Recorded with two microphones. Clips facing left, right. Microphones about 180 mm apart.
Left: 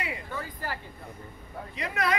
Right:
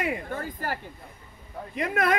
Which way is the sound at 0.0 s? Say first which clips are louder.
Right 6 dB; 50° right (ahead or behind).